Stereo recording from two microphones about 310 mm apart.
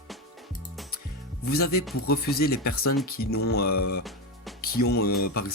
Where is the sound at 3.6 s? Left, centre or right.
Left.